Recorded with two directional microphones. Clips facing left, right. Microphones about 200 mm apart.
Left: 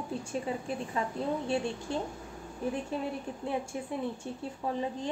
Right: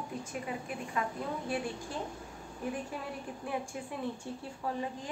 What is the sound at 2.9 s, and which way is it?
A woman's voice, 25° left (ahead or behind).